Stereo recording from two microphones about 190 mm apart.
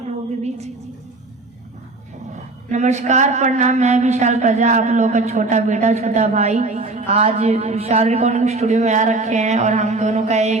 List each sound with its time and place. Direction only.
2.7 s a woman's voice: 40° right (ahead or behind)